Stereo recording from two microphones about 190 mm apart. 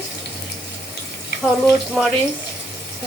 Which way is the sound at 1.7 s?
Centre (ahead or behind).